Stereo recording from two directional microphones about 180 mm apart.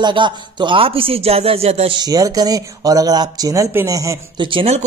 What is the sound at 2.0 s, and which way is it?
Speech, 20° right (ahead or behind).